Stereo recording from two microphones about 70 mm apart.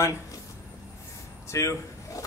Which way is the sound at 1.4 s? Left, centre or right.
Left.